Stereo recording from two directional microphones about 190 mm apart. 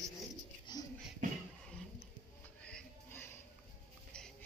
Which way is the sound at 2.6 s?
5° left (ahead or behind).